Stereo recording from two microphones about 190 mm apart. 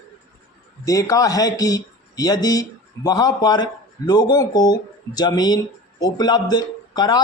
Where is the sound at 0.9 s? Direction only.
15° left (ahead or behind).